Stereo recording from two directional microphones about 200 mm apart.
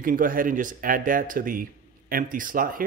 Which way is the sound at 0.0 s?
45° right (ahead or behind).